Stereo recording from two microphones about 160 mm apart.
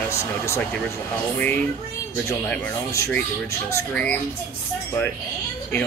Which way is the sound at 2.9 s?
20° left (ahead or behind).